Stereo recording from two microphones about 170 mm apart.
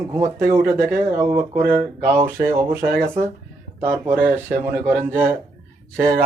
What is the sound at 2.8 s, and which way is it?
Speech, 65° right (ahead or behind).